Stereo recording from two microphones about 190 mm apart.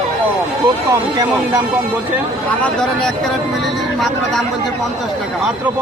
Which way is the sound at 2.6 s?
5° left (ahead or behind).